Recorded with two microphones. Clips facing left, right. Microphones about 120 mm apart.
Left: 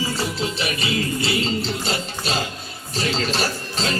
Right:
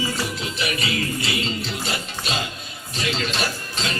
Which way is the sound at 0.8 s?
30° left (ahead or behind).